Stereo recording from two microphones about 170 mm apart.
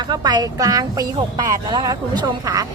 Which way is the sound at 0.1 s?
25° right (ahead or behind).